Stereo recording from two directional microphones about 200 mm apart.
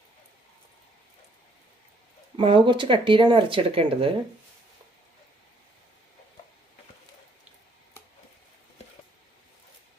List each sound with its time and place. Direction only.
2.3 s speech: 25° right (ahead or behind)